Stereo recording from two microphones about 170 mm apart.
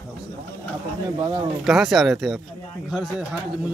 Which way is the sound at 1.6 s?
Centre (ahead or behind).